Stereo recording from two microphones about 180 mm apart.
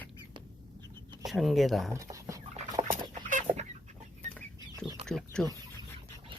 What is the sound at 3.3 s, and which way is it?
Chicken, 45° right (ahead or behind).